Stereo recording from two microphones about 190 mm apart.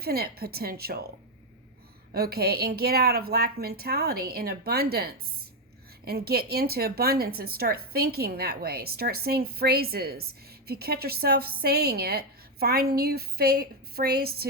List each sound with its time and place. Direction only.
0.0 s a woman's voice: 55° right (ahead or behind)
2.1 s speech: 55° right (ahead or behind)